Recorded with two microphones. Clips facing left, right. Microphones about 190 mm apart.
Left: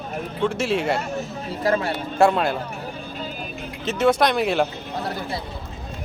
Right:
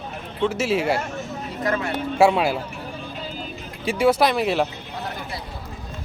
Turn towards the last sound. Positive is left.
turn(degrees=0)  # may be behind; listen again after turning